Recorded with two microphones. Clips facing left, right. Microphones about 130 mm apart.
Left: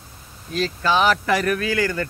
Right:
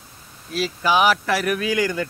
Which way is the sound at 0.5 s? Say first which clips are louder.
Even; 5° right (ahead or behind).